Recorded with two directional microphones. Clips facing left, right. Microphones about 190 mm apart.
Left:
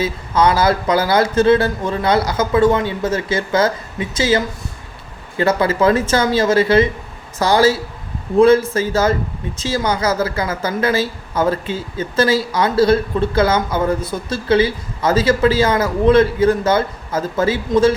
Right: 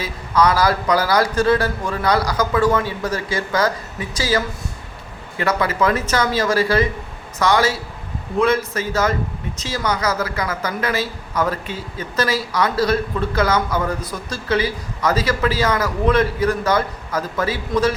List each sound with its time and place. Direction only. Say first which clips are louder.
0.0 s speech: left 2 dB; 25° left (ahead or behind)